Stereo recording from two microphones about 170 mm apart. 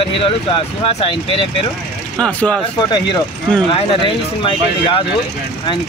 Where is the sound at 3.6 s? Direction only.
30° left (ahead or behind).